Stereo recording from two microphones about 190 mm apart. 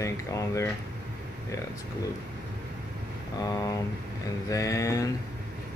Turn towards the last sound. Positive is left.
turn(degrees=15)  # may be behind; listen again after turning